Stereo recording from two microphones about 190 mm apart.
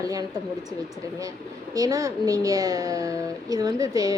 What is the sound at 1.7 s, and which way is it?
A woman's voice, 20° right (ahead or behind).